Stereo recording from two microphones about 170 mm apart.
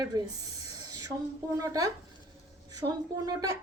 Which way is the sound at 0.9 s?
20° right (ahead or behind).